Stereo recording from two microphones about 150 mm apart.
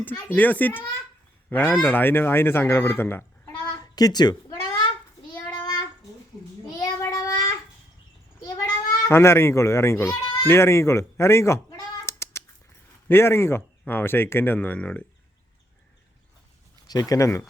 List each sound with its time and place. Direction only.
0.0 s speech: 10° left (ahead or behind)
3.7 s a sound: 25° left (ahead or behind)
5.5 s child singing: 25° left (ahead or behind)
9.0 s speech: 15° left (ahead or behind)
12.0 s a sound: 20° left (ahead or behind)
13.1 s speech: 15° left (ahead or behind)
16.8 s speech: 25° left (ahead or behind)